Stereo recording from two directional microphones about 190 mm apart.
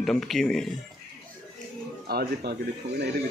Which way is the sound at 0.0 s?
Centre (ahead or behind).